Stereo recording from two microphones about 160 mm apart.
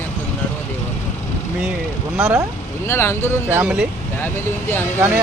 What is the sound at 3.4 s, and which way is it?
Speech, 10° right (ahead or behind).